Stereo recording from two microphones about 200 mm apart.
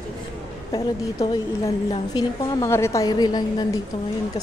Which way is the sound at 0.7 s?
20° left (ahead or behind).